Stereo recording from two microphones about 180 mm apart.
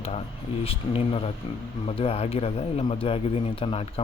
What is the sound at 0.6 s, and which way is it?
A man's voice, 30° left (ahead or behind).